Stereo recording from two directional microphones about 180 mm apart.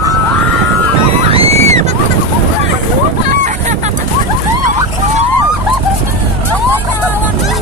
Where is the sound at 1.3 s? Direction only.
35° right (ahead or behind).